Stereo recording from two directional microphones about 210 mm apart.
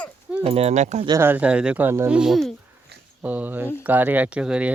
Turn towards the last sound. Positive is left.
turn(degrees=-5)  # may be behind; listen again after turning